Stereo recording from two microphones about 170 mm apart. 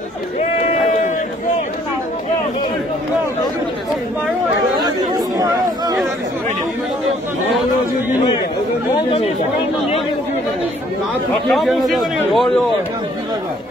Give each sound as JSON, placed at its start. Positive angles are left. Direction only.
{"t": 4.7, "sound": "chatter", "side_deg": -25}
{"t": 11.4, "sound": "speech", "side_deg": 0}